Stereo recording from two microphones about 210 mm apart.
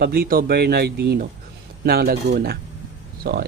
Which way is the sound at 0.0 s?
45° right (ahead or behind).